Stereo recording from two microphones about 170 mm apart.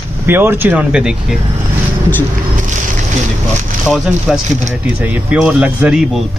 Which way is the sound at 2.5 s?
45° right (ahead or behind).